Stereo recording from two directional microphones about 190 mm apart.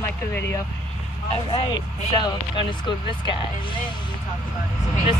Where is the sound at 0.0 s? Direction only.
15° left (ahead or behind).